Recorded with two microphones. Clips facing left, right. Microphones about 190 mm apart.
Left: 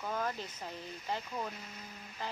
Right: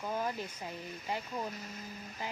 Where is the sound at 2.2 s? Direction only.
15° right (ahead or behind).